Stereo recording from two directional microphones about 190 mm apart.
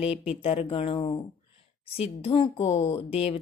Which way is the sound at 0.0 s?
30° left (ahead or behind).